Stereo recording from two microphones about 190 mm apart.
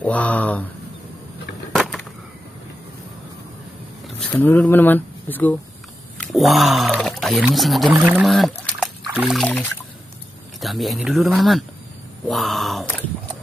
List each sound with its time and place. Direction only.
0.0 s speech: 5° left (ahead or behind)
1.8 s a sound: centre (ahead or behind)
4.2 s speech: 10° left (ahead or behind)